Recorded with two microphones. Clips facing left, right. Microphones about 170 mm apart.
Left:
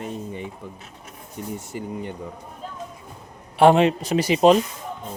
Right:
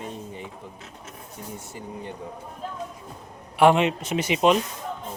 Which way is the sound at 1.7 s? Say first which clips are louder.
Left 5 dB; 80° left.